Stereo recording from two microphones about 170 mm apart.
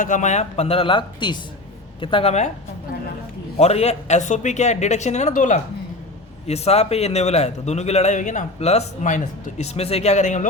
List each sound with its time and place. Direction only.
0.0 s a man's voice: 45° left (ahead or behind)
3.6 s speech: 40° left (ahead or behind)
6.5 s a man's voice: 40° left (ahead or behind)